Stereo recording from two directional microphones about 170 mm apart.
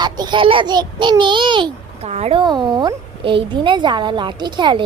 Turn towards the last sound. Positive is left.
turn(degrees=-25)  # may be behind; listen again after turning